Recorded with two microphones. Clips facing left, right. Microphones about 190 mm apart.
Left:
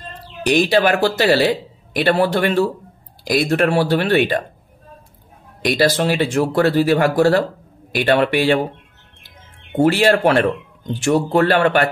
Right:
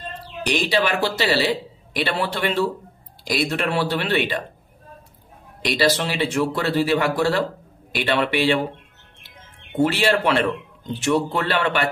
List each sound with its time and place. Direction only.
0.7 s speech: 50° left (ahead or behind)
5.6 s speech: 50° left (ahead or behind)
9.8 s speech: 45° left (ahead or behind)